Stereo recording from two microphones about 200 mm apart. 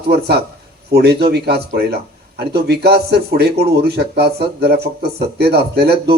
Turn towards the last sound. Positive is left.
turn(degrees=-55)  # may be behind; listen again after turning